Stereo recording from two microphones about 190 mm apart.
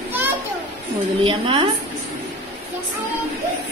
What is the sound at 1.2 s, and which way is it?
Speech, 25° right (ahead or behind).